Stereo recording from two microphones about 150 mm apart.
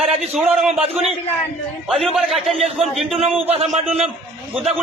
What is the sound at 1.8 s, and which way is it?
A man's voice, centre (ahead or behind).